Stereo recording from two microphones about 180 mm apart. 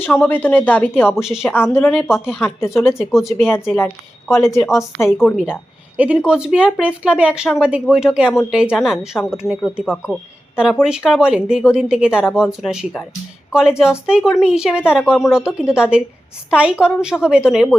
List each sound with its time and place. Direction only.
0.0 s a woman's voice: 10° left (ahead or behind)
1.0 s speech: 5° right (ahead or behind)
1.5 s a woman's voice: 10° left (ahead or behind)
3.1 s speech: centre (ahead or behind)
3.4 s a woman's voice: 10° left (ahead or behind)
5.2 s speech: centre (ahead or behind)